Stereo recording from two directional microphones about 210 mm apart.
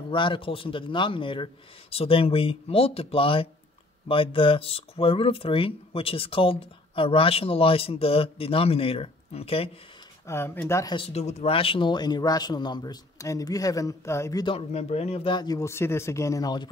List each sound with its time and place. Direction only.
0.1 s speech: 25° left (ahead or behind)
10.2 s speech: 10° left (ahead or behind)